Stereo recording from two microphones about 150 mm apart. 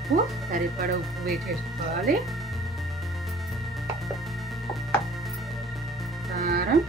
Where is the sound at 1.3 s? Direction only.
Centre (ahead or behind).